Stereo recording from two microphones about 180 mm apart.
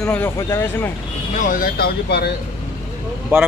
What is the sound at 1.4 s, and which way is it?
Speech, 50° left (ahead or behind).